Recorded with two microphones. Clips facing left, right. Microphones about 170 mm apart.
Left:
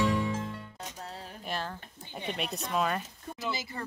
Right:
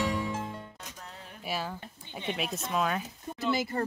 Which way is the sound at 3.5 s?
55° right (ahead or behind).